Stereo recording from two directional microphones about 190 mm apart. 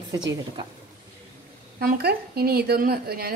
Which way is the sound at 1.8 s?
55° right (ahead or behind).